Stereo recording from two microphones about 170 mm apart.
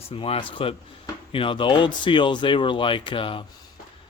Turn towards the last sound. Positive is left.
turn(degrees=30)  # may be behind; listen again after turning